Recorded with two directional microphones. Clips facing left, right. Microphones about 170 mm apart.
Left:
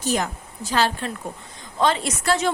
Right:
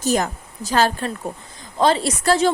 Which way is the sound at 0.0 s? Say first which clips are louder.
Right 4 dB; 40° right (ahead or behind).